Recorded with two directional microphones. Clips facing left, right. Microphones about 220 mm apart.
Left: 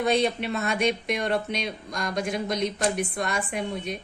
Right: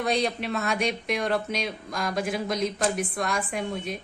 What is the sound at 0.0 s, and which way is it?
A woman's voice, centre (ahead or behind).